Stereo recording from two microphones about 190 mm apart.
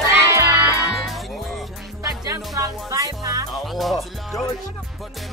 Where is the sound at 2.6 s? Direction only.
15° right (ahead or behind).